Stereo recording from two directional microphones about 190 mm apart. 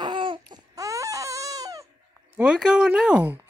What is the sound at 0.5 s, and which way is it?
Baby cry, 20° right (ahead or behind).